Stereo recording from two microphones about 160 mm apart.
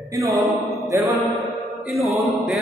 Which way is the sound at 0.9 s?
20° right (ahead or behind).